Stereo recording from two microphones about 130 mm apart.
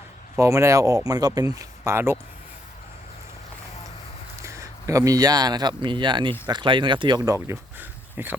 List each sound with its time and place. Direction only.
0.3 s speech: 20° right (ahead or behind)
4.4 s speech: 25° right (ahead or behind)